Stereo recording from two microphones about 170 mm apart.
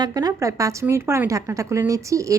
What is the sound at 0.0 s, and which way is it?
A woman's voice, 20° right (ahead or behind).